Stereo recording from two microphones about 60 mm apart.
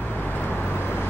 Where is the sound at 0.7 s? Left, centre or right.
Left.